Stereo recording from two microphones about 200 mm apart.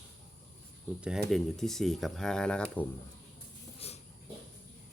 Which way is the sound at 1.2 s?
Centre (ahead or behind).